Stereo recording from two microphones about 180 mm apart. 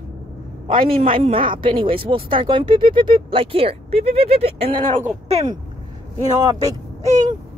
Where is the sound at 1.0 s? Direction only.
30° right (ahead or behind).